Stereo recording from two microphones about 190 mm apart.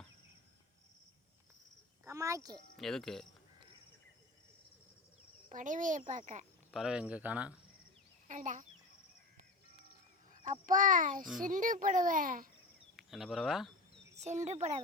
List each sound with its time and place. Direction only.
2.0 s a sound: 15° right (ahead or behind)
2.7 s cricket: centre (ahead or behind)
5.5 s a child's voice: 45° right (ahead or behind)
6.7 s speech: centre (ahead or behind)
8.3 s a child's voice: 40° right (ahead or behind)
10.3 s a child's voice: 40° right (ahead or behind)
13.0 s speech: centre (ahead or behind)
14.2 s a child's voice: 35° right (ahead or behind)